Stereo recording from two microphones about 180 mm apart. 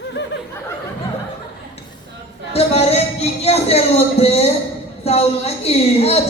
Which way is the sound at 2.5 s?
35° left (ahead or behind).